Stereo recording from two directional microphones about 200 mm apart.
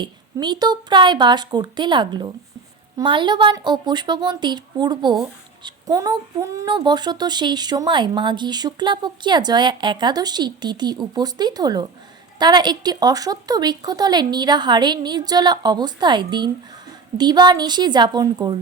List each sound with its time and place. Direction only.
0.0 s speech: 20° right (ahead or behind)